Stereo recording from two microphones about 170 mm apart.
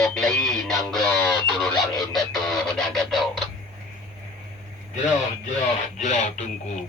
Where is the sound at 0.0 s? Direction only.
5° left (ahead or behind).